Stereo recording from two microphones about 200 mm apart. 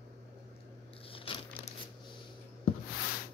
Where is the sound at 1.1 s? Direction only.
25° left (ahead or behind).